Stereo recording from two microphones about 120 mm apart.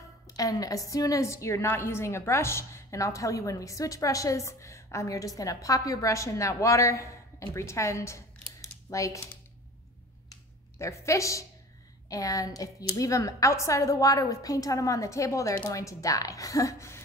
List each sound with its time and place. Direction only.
0.4 s a woman's voice: 30° left (ahead or behind)
10.3 s a sound: 25° left (ahead or behind)
12.1 s a woman's voice: 30° left (ahead or behind)